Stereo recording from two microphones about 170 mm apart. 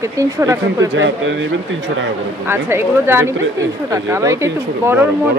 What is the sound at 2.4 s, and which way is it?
A woman's voice, 15° right (ahead or behind).